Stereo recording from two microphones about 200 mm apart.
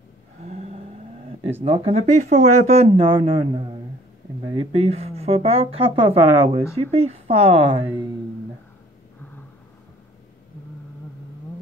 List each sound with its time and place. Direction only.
0.5 s vehicle: 35° right (ahead or behind)
1.6 s speech: 30° right (ahead or behind)